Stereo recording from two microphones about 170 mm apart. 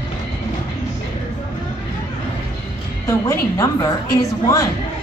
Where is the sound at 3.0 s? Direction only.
15° left (ahead or behind).